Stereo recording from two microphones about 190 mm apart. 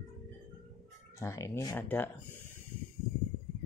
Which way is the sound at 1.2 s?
15° left (ahead or behind).